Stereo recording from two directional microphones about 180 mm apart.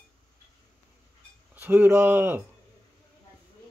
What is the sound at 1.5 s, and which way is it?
Speech, 10° right (ahead or behind).